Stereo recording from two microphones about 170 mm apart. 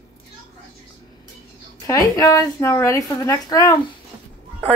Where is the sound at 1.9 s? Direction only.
20° left (ahead or behind).